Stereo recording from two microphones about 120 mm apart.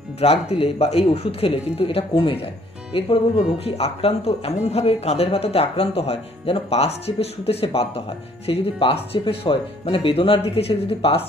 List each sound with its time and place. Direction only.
0.2 s speech: 55° left (ahead or behind)